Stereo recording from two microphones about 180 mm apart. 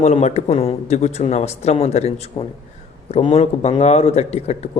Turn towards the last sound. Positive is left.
turn(degrees=35)  # may be behind; listen again after turning